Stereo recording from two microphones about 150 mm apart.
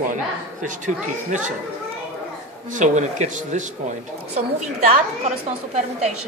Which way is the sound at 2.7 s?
55° right (ahead or behind).